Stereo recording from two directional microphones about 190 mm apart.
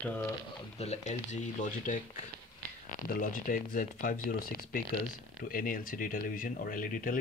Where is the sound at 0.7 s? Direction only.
35° left (ahead or behind).